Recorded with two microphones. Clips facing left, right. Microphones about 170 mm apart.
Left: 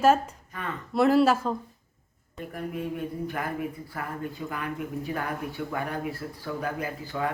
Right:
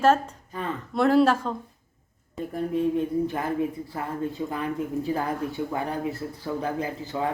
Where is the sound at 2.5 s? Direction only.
30° right (ahead or behind).